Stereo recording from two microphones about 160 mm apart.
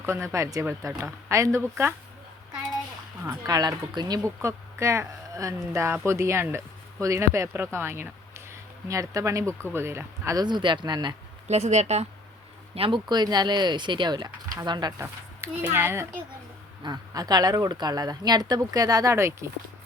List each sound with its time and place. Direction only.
0.0 s speech: 15° right (ahead or behind)
3.4 s speech: 25° right (ahead or behind)
11.4 s speech: 45° right (ahead or behind)
12.7 s speech: 35° right (ahead or behind)
15.0 s speech: 15° right (ahead or behind)
16.8 s speech: 25° right (ahead or behind)